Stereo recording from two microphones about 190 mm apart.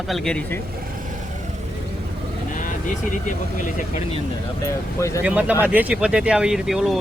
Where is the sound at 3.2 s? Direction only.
40° left (ahead or behind).